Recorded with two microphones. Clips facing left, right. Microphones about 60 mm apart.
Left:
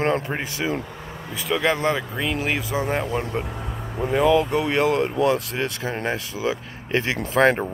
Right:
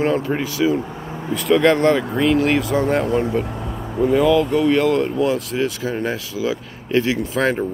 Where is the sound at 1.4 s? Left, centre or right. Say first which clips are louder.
Right 7 dB; centre.